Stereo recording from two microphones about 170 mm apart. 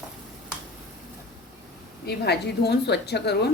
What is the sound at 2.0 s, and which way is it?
A woman's voice, 75° left (ahead or behind).